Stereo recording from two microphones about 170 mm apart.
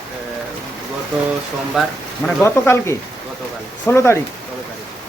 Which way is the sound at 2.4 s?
15° left (ahead or behind).